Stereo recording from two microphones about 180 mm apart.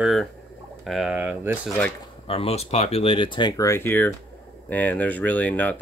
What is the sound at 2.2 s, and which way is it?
Speech, 35° left (ahead or behind).